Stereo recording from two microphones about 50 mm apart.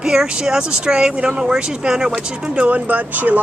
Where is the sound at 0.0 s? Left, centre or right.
Centre.